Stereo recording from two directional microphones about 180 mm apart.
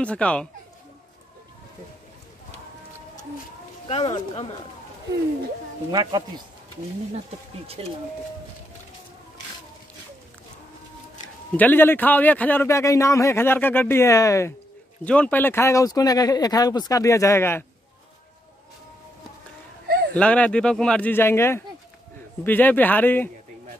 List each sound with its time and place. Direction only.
0.0 s a man's voice: 5° left (ahead or behind)
3.8 s speech: 30° left (ahead or behind)
5.9 s speech: 20° right (ahead or behind)
7.8 s speech: 30° right (ahead or behind)
11.5 s a man's voice: 10° left (ahead or behind)
20.2 s a man's voice: 5° left (ahead or behind)